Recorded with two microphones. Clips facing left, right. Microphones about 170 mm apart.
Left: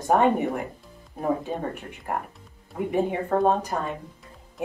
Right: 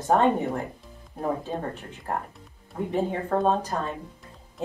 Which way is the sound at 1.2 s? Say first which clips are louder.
Left 1 dB; centre (ahead or behind).